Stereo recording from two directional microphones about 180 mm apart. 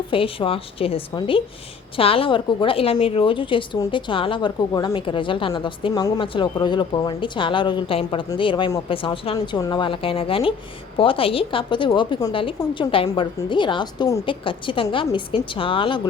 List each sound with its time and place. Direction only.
0.1 s a woman's voice: 30° left (ahead or behind)